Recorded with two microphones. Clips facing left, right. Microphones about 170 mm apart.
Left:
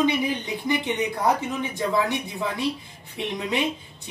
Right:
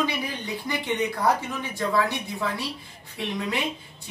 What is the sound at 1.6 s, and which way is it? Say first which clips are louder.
A woman's voice: left 1 dB; 20° left (ahead or behind).